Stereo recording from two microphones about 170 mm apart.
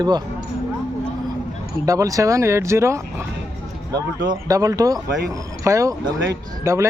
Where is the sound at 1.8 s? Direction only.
20° right (ahead or behind).